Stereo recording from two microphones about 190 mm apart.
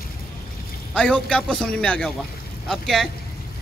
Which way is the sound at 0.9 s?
5° left (ahead or behind).